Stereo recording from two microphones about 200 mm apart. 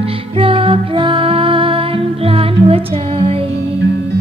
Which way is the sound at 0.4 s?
25° right (ahead or behind).